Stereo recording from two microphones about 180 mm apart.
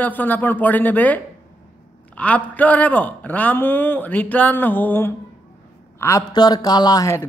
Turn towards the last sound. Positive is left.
turn(degrees=20)  # may be behind; listen again after turning